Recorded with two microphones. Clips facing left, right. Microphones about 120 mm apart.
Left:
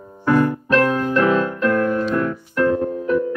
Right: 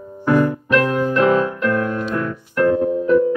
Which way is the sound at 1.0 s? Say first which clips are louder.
Right 2 dB; 10° right (ahead or behind).